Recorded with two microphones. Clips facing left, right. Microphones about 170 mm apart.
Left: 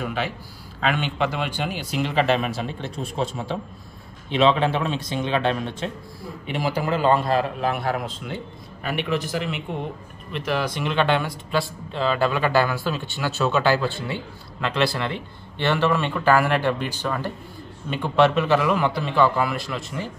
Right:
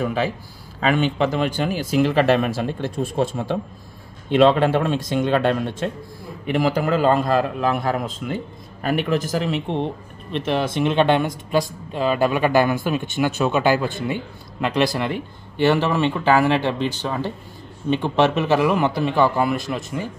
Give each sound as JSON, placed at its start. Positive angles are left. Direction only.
{"t": 0.0, "sound": "a man's voice", "side_deg": -40}
{"t": 4.7, "sound": "a man's voice", "side_deg": -50}
{"t": 6.4, "sound": "a man's voice", "side_deg": -50}